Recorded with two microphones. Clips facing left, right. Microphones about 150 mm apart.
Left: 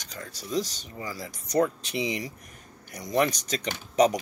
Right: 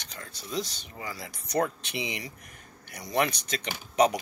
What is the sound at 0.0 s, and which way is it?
Speech, 40° left (ahead or behind).